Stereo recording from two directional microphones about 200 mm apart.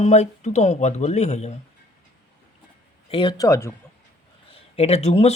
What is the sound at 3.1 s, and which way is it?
Speech, 25° left (ahead or behind).